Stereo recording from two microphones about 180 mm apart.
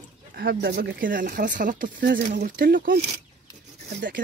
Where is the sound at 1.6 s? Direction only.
50° right (ahead or behind).